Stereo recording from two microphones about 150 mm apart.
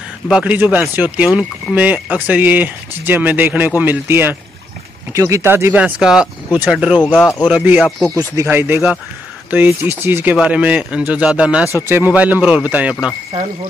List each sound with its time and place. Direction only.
0.3 s speech: 5° right (ahead or behind)
7.8 s speech: 5° left (ahead or behind)
8.4 s speech: 15° right (ahead or behind)